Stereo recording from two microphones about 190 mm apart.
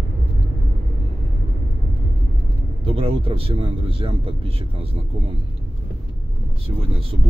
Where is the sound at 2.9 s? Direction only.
30° right (ahead or behind).